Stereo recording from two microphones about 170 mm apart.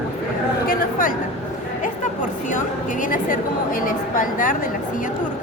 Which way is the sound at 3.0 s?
50° left (ahead or behind).